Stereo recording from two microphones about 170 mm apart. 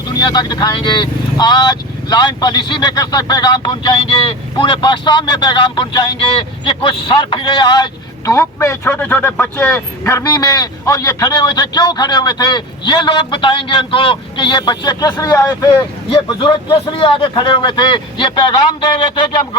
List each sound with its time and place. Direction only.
0.1 s speech: 25° left (ahead or behind)